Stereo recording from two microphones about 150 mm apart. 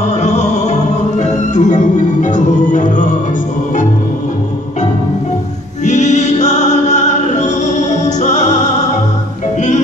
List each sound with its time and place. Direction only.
0.2 s music: 50° left (ahead or behind)
5.9 s music: 50° left (ahead or behind)